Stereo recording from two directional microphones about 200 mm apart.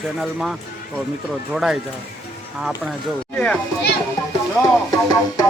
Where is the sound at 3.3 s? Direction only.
5° left (ahead or behind).